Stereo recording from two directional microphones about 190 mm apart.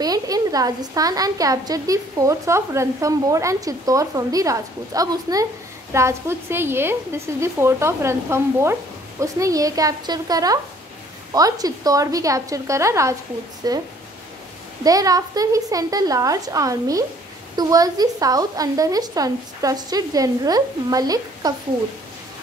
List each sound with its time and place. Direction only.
0.0 s a woman's voice: 20° right (ahead or behind)